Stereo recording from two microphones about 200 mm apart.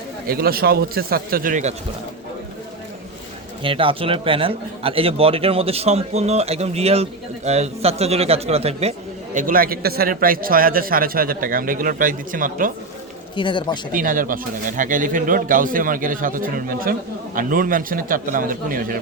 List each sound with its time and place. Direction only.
0.3 s speech: 50° right (ahead or behind)
3.6 s a man's voice: 25° right (ahead or behind); by 12.7 s 40° right (ahead or behind)
13.3 s speech: 25° left (ahead or behind)
13.9 s speech: 45° right (ahead or behind)